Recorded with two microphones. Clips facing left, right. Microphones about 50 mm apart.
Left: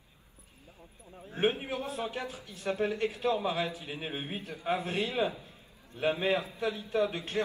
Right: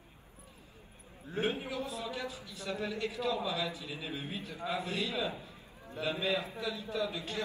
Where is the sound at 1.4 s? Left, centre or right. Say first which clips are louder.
Left 4 dB; left.